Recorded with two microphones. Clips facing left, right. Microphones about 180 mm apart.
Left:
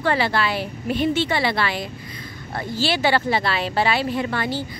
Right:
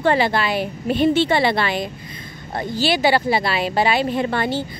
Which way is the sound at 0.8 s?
30° right (ahead or behind).